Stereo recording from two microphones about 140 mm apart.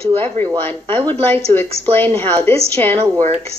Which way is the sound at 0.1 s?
15° left (ahead or behind).